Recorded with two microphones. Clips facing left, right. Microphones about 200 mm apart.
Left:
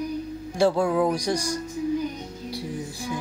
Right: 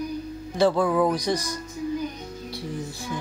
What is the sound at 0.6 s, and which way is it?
Music, 10° left (ahead or behind).